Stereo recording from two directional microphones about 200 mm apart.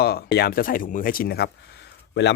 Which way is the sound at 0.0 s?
50° left (ahead or behind).